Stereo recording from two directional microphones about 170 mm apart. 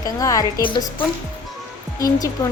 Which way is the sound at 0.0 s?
20° left (ahead or behind).